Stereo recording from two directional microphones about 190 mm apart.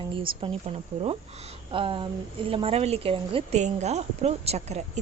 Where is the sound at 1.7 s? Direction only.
25° right (ahead or behind).